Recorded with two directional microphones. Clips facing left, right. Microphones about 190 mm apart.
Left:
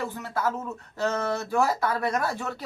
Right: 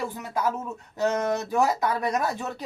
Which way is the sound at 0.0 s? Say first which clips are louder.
Right 1 dB; 15° right (ahead or behind).